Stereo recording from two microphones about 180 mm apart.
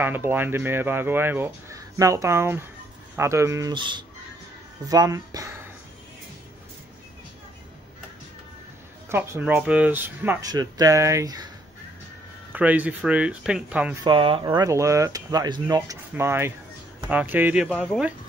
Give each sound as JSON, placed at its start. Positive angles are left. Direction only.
{"t": 0.0, "sound": "speech", "side_deg": -10}
{"t": 9.1, "sound": "speech", "side_deg": -15}
{"t": 12.5, "sound": "speech", "side_deg": -10}
{"t": 14.0, "sound": "speech", "side_deg": -30}
{"t": 17.6, "sound": "speech", "side_deg": 5}